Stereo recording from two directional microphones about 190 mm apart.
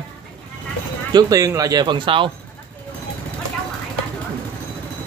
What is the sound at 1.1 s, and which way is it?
Speech, 20° right (ahead or behind).